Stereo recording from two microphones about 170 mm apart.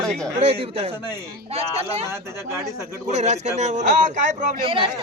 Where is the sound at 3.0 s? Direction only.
40° right (ahead or behind).